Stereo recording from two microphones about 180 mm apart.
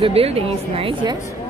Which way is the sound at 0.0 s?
35° right (ahead or behind).